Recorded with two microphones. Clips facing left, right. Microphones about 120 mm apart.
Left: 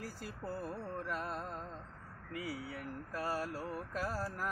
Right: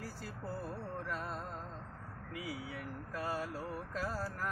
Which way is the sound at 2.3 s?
Centre (ahead or behind).